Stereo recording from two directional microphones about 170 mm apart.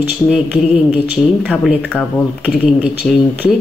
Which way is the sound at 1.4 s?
Centre (ahead or behind).